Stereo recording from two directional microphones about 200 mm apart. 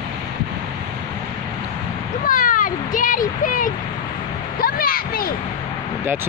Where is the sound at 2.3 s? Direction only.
45° left (ahead or behind).